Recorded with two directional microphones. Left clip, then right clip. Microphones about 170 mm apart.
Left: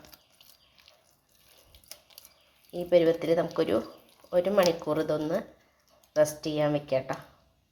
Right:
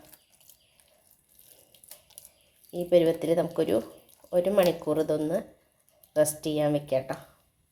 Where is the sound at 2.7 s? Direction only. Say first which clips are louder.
Even; 20° right (ahead or behind).